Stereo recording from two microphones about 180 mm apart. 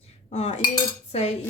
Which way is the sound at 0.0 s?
35° left (ahead or behind).